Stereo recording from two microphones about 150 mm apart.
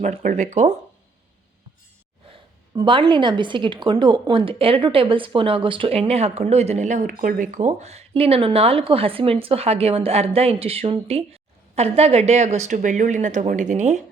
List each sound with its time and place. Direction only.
0.0 s speech: 55° right (ahead or behind)
2.7 s a woman's voice: 30° right (ahead or behind); by 14.0 s 50° right (ahead or behind)